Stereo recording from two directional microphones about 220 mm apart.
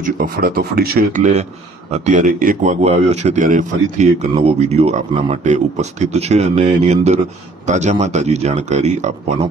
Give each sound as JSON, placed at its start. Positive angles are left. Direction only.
{"t": 0.0, "sound": "speech", "side_deg": -40}
{"t": 1.9, "sound": "a man's voice", "side_deg": -30}